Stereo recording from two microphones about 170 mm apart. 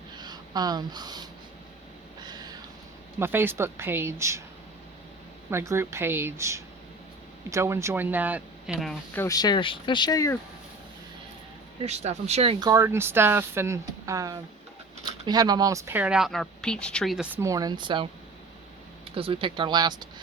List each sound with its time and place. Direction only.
0.2 s speech: 25° right (ahead or behind)
2.2 s a sound: 25° right (ahead or behind)
3.2 s speech: 15° right (ahead or behind)
5.5 s speech: 15° right (ahead or behind)
9.1 s speech: 20° left (ahead or behind)
11.8 s a woman's voice: 40° right (ahead or behind); by 17.2 s centre (ahead or behind)
17.3 s speech: 20° right (ahead or behind)
19.1 s speech: 30° right (ahead or behind)